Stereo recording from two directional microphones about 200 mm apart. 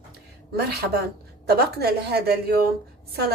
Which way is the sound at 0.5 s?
55° right (ahead or behind).